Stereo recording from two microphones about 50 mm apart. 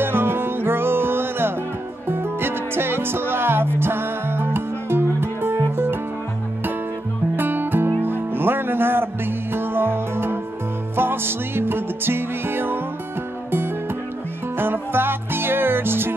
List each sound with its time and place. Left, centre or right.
0.0 s music: right
7.3 s music: right
14.6 s music: right